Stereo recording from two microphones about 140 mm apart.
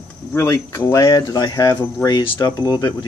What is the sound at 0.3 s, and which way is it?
Speech, 20° left (ahead or behind).